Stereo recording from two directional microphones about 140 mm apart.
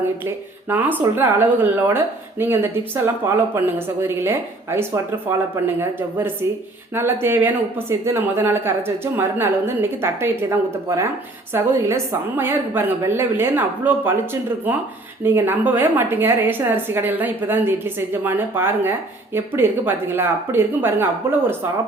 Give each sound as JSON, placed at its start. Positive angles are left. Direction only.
{"t": 0.0, "sound": "a woman's voice", "side_deg": -15}